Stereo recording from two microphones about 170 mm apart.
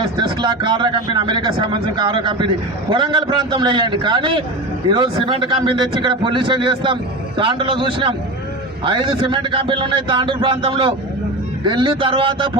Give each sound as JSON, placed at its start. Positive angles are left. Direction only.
{"t": 0.0, "sound": "speech", "side_deg": -30}